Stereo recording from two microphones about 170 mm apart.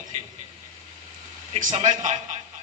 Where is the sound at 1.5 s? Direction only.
45° right (ahead or behind).